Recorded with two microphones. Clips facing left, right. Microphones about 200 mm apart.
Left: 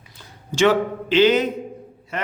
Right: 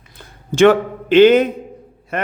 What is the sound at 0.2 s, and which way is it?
A man's voice, 55° right (ahead or behind).